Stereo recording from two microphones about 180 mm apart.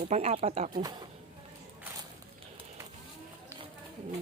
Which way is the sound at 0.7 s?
20° right (ahead or behind).